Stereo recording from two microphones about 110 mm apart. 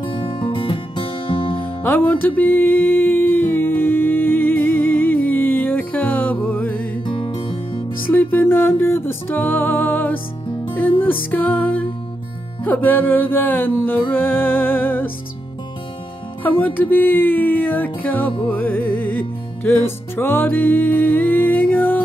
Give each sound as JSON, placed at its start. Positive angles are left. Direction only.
{"t": 0.0, "sound": "music", "side_deg": 50}
{"t": 1.6, "sound": "music", "side_deg": 15}
{"t": 7.1, "sound": "music", "side_deg": 50}
{"t": 8.1, "sound": "music", "side_deg": 15}
{"t": 16.4, "sound": "music", "side_deg": 15}